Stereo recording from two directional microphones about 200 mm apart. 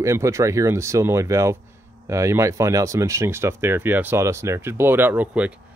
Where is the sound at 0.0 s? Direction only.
15° right (ahead or behind).